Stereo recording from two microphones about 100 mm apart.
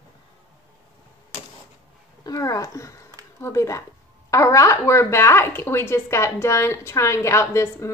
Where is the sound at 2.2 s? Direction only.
40° left (ahead or behind).